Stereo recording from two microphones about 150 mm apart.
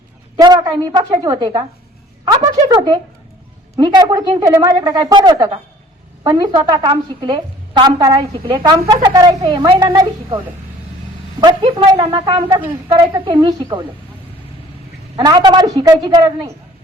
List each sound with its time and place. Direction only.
0.3 s a woman's voice: 25° right (ahead or behind)
2.2 s a sound: 25° right (ahead or behind)
2.7 s a woman's voice: 30° right (ahead or behind)
15.1 s a woman's voice: 30° right (ahead or behind)